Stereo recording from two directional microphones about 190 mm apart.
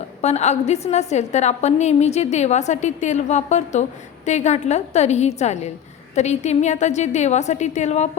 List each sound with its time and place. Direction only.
0.2 s a woman's voice: 35° left (ahead or behind)